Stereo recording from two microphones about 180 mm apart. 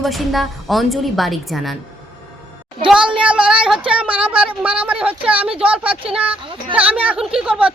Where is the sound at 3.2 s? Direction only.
5° right (ahead or behind).